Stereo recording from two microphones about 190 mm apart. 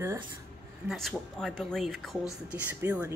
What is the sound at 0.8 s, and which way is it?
A woman's voice, centre (ahead or behind).